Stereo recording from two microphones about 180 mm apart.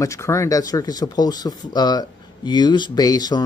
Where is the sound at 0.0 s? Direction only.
15° left (ahead or behind).